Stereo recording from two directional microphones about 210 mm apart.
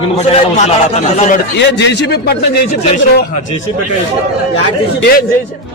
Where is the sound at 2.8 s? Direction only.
30° left (ahead or behind).